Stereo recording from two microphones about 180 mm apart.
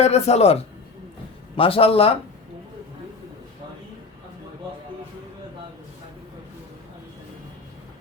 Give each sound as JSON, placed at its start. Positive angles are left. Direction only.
{"t": 0.0, "sound": "a man's voice", "side_deg": 35}